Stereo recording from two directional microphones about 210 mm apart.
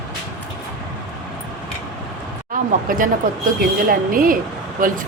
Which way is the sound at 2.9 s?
40° right (ahead or behind).